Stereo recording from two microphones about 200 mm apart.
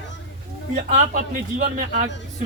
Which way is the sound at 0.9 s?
40° right (ahead or behind).